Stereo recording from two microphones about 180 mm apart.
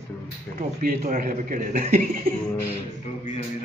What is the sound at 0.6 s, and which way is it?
A man's voice, 50° right (ahead or behind).